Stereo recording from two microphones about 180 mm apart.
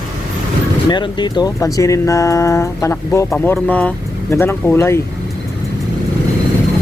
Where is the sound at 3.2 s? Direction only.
Centre (ahead or behind).